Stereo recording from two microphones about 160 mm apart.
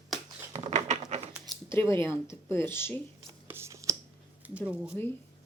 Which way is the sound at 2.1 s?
15° left (ahead or behind).